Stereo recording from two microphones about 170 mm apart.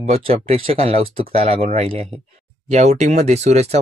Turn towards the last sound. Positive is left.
turn(degrees=-40)  # may be behind; listen again after turning